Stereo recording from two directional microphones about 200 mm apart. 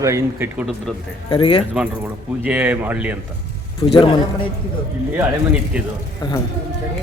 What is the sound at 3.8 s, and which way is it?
Speech, 20° left (ahead or behind).